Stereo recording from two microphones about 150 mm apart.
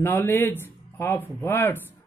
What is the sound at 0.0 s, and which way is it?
Speech, 15° left (ahead or behind).